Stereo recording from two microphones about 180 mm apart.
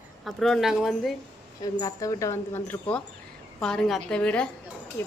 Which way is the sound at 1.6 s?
20° left (ahead or behind).